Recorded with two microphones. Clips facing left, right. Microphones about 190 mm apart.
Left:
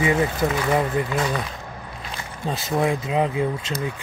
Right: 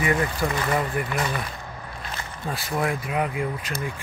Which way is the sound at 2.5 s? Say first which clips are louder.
Left 4 dB; 20° left (ahead or behind).